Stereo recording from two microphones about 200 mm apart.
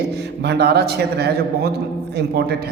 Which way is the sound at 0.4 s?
55° right (ahead or behind).